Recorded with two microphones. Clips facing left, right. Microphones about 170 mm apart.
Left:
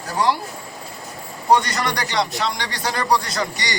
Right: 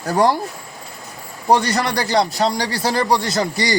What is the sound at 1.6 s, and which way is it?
Speech, 30° right (ahead or behind).